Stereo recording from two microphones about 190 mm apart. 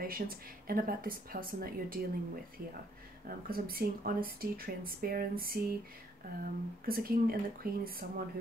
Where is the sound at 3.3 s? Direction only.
50° right (ahead or behind).